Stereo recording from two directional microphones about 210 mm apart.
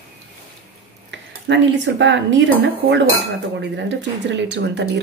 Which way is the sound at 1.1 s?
60° right (ahead or behind).